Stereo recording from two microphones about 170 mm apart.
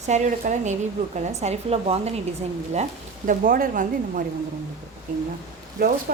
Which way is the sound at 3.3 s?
55° right (ahead or behind).